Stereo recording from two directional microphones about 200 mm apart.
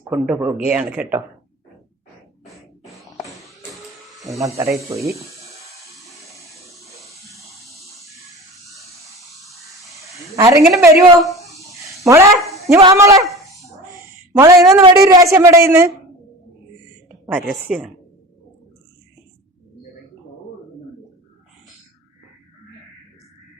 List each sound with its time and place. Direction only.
0.1 s speech: centre (ahead or behind)
2.8 s a sound: centre (ahead or behind)
4.2 s a woman's voice: 15° right (ahead or behind)
9.5 s a sound: centre (ahead or behind)
10.3 s a woman's voice: 15° right (ahead or behind)
11.2 s speech: centre (ahead or behind)
11.9 s a woman's voice: 15° right (ahead or behind)
13.1 s a sound: centre (ahead or behind)
14.3 s a woman's voice: 15° right (ahead or behind)
17.2 s a woman's voice: 10° right (ahead or behind)